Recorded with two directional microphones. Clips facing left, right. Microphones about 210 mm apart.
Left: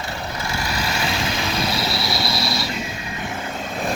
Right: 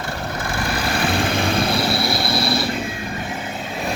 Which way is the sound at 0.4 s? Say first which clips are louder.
Right 3 dB; 50° right (ahead or behind).